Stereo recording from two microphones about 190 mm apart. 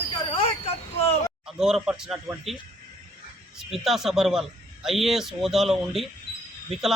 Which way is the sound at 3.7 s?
Centre (ahead or behind).